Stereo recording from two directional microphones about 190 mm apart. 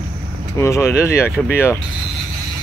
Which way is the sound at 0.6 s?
15° left (ahead or behind).